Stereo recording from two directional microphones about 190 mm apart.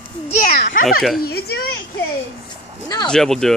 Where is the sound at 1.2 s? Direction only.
55° left (ahead or behind).